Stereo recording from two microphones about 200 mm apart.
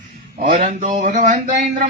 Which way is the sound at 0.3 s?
45° right (ahead or behind).